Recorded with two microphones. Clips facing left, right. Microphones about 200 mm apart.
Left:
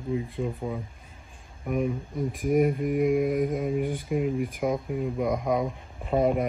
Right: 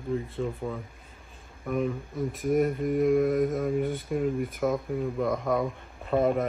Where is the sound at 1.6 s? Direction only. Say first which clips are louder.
Left 1 dB; 15° left (ahead or behind).